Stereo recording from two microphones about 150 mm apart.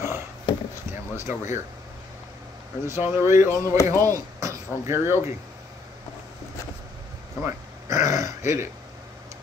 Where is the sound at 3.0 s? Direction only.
15° right (ahead or behind).